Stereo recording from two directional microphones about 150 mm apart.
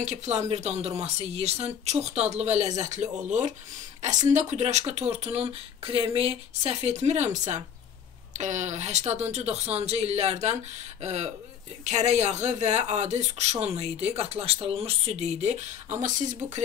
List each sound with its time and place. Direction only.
0.0 s a woman's voice: 50° right (ahead or behind)